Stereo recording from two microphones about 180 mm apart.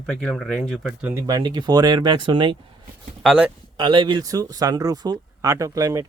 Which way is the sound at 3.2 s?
5° right (ahead or behind).